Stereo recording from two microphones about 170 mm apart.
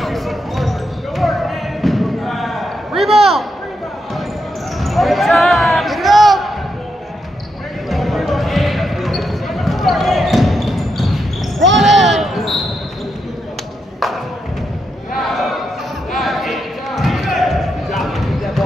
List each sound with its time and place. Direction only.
0.0 s basketball bounce: centre (ahead or behind)
4.7 s basketball bounce: centre (ahead or behind)
7.9 s basketball bounce: centre (ahead or behind)
15.1 s a sound: centre (ahead or behind)
16.1 s basketball bounce: centre (ahead or behind)